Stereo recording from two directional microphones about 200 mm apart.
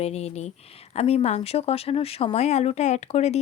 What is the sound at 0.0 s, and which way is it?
Speech, 30° left (ahead or behind).